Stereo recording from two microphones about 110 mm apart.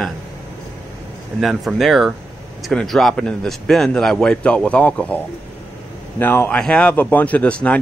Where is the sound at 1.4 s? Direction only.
5° right (ahead or behind).